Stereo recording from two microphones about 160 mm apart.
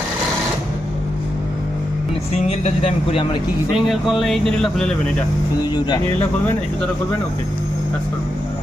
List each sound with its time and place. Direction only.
2.3 s speech: 40° left (ahead or behind)
3.8 s speech: centre (ahead or behind)
5.6 s speech: 25° left (ahead or behind)